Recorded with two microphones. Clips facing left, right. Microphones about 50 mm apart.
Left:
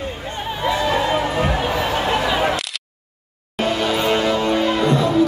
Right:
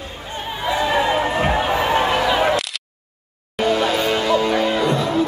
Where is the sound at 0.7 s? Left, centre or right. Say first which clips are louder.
Right 1 dB; centre.